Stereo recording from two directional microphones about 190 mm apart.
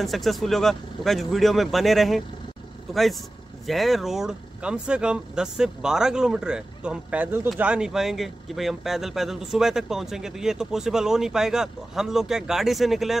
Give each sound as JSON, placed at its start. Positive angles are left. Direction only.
{"t": 0.0, "sound": "speech", "side_deg": 0}